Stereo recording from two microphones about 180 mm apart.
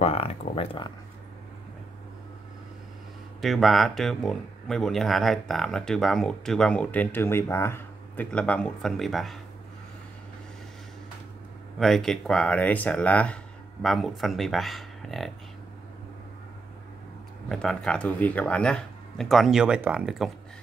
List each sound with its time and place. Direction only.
0.0 s speech: 35° left (ahead or behind)
3.3 s speech: centre (ahead or behind)
11.8 s speech: centre (ahead or behind)
17.5 s speech: 5° left (ahead or behind)